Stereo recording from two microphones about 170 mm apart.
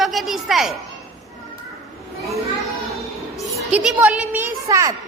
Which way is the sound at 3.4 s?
5° right (ahead or behind).